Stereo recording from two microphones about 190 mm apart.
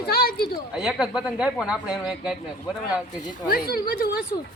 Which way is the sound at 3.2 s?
50° left (ahead or behind).